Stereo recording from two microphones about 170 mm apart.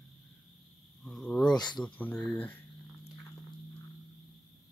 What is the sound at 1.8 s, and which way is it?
Speech, 10° left (ahead or behind).